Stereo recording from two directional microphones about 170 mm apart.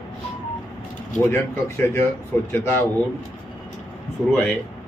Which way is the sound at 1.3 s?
15° left (ahead or behind).